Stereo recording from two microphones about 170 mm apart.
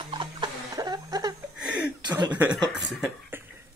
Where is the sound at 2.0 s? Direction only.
25° right (ahead or behind).